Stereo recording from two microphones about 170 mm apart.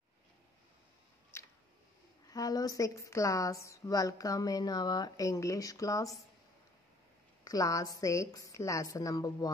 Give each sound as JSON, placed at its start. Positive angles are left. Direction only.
{"t": 1.3, "sound": "a sound", "side_deg": 15}
{"t": 2.2, "sound": "a woman's voice", "side_deg": 20}
{"t": 7.4, "sound": "a woman's voice", "side_deg": 20}